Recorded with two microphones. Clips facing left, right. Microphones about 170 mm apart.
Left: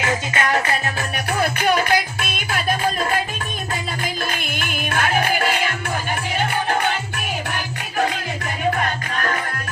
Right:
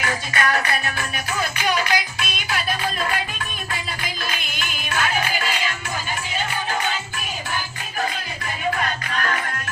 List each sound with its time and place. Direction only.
0.0 s music: 25° left (ahead or behind)
1.3 s music: 55° left (ahead or behind)
7.5 s music: 70° left (ahead or behind)
8.7 s music: 40° left (ahead or behind)